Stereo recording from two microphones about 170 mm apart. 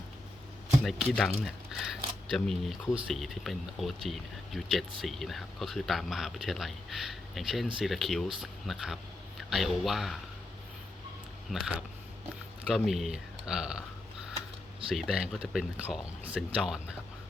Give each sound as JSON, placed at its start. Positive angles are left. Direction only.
{"t": 0.9, "sound": "speech", "side_deg": 0}
{"t": 11.5, "sound": "speech", "side_deg": -5}
{"t": 14.9, "sound": "speech", "side_deg": -5}